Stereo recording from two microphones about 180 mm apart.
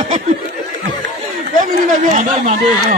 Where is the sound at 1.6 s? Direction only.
45° right (ahead or behind).